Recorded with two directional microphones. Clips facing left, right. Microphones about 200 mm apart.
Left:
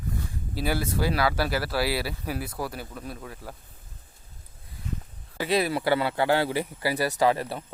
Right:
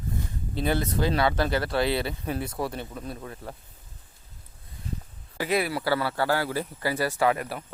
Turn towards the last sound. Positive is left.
turn(degrees=30)  # may be behind; listen again after turning